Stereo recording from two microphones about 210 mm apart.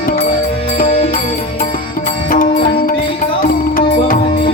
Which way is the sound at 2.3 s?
40° left (ahead or behind).